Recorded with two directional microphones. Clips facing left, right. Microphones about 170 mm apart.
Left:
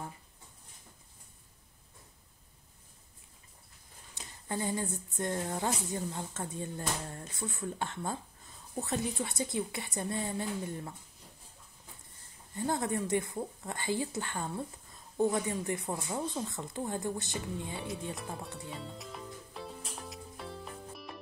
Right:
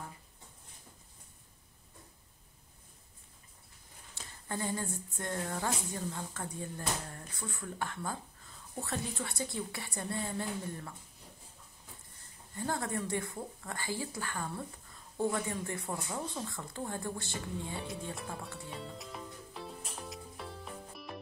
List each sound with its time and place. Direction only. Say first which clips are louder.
4.1 s speech: left 2 dB; 20° left (ahead or behind)
12.5 s speech: left 3 dB; 20° left (ahead or behind)
18.6 s music: left 1 dB; centre (ahead or behind)